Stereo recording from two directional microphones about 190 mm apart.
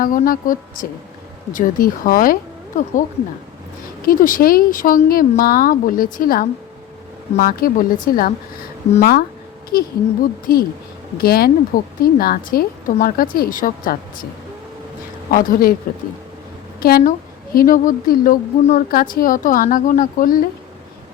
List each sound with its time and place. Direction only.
0.0 s a woman's voice: 45° left (ahead or behind)
4.0 s a woman's voice: 45° left (ahead or behind)
15.3 s a woman's voice: 45° left (ahead or behind)
16.8 s a woman's voice: 50° left (ahead or behind)